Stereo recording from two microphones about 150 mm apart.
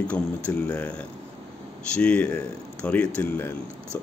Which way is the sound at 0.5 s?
10° left (ahead or behind).